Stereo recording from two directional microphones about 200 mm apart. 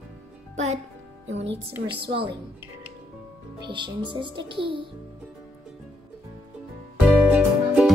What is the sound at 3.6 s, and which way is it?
A child's voice, 25° right (ahead or behind).